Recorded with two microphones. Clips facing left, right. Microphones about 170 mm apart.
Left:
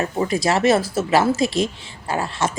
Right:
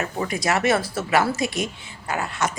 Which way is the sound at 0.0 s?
25° left (ahead or behind).